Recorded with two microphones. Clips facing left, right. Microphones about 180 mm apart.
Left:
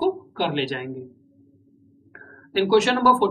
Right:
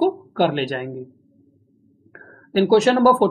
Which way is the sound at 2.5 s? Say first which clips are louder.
Right 4 dB; 40° right (ahead or behind).